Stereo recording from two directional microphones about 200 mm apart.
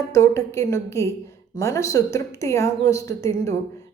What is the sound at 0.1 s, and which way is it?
Speech, 15° left (ahead or behind).